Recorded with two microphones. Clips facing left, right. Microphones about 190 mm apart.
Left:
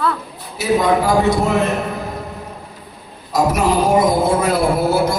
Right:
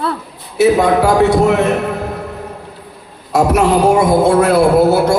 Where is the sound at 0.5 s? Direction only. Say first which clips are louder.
Right 5 dB; 65° right (ahead or behind).